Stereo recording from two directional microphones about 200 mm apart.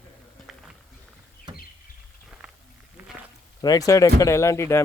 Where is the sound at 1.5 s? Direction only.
20° right (ahead or behind).